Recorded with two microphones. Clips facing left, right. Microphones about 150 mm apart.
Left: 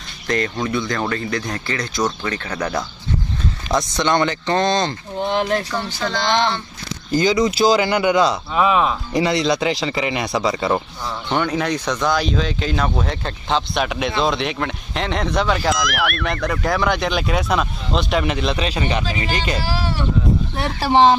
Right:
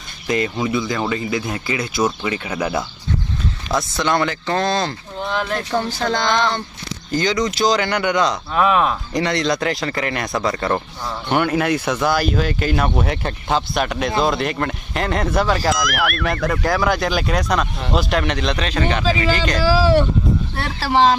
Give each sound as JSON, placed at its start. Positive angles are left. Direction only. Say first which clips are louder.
{"t": 0.3, "sound": "speech", "louder": "right 1 dB", "side_deg": -5}
{"t": 5.2, "sound": "speech", "louder": "left 3 dB", "side_deg": 35}
{"t": 5.7, "sound": "speech", "louder": "right 4 dB", "side_deg": -45}
{"t": 7.1, "sound": "speech", "louder": "left 3 dB", "side_deg": 10}
{"t": 11.1, "sound": "speech", "louder": "right 2 dB", "side_deg": -5}
{"t": 19.1, "sound": "speech", "louder": "right 6 dB", "side_deg": -90}
{"t": 20.5, "sound": "speech", "louder": "left 3 dB", "side_deg": 20}